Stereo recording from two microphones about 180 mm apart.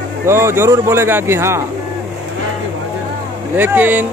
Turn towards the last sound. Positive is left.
turn(degrees=-10)  # may be behind; listen again after turning